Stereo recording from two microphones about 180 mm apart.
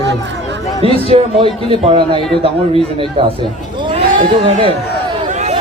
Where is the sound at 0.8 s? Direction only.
30° right (ahead or behind).